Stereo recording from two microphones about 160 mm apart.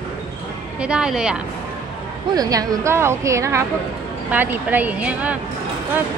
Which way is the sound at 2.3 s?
20° right (ahead or behind).